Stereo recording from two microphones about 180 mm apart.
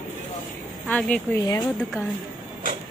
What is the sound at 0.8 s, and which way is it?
Speech, 10° left (ahead or behind).